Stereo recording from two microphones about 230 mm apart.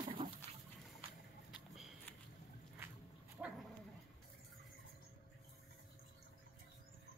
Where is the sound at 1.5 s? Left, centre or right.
Centre.